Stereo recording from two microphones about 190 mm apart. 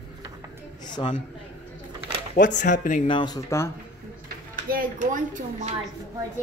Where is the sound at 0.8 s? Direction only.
25° left (ahead or behind).